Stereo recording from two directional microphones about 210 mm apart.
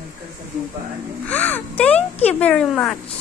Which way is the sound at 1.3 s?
10° left (ahead or behind).